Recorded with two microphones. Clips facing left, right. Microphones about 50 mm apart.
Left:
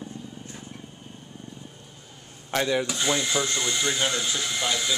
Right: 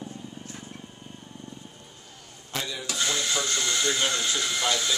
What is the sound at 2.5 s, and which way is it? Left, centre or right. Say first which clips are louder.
Speech: left 9 dB; left.